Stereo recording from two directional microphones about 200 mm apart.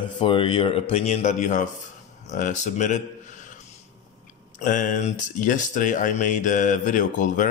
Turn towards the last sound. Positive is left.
turn(degrees=40)  # may be behind; listen again after turning